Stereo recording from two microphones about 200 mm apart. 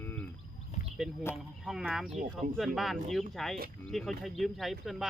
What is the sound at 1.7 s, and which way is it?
Speech, centre (ahead or behind).